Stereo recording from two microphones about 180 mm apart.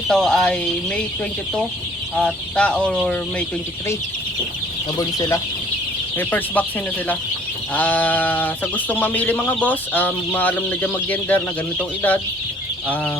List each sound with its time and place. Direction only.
0.1 s speech: centre (ahead or behind)
2.1 s speech: 5° left (ahead or behind)
4.9 s speech: 20° left (ahead or behind)
6.1 s speech: 10° left (ahead or behind)
7.7 s speech: 10° left (ahead or behind)